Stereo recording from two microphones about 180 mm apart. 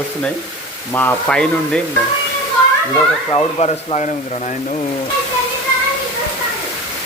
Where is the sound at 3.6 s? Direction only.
35° left (ahead or behind).